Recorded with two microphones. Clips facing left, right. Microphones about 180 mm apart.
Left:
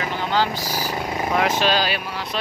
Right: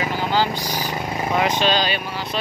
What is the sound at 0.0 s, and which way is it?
Speech, 5° right (ahead or behind).